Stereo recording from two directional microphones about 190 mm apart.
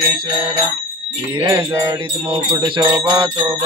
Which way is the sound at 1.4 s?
20° right (ahead or behind).